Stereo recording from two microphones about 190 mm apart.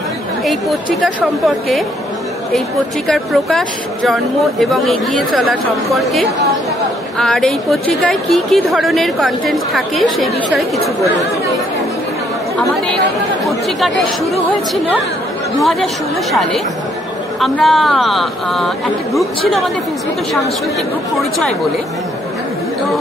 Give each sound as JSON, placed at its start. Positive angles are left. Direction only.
{"t": 0.5, "sound": "a woman's voice", "side_deg": 0}
{"t": 3.1, "sound": "a woman's voice", "side_deg": 0}
{"t": 7.2, "sound": "a woman's voice", "side_deg": 5}
{"t": 13.7, "sound": "a woman's voice", "side_deg": 0}
{"t": 15.6, "sound": "a woman's voice", "side_deg": 0}
{"t": 21.2, "sound": "a woman's voice", "side_deg": 0}